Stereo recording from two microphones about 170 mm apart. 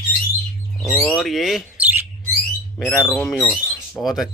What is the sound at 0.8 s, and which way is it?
Speech, centre (ahead or behind).